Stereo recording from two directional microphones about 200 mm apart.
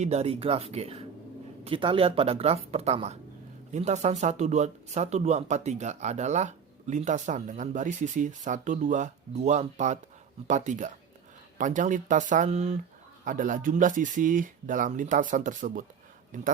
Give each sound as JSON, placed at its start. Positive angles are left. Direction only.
{"t": 0.0, "sound": "speech", "side_deg": -30}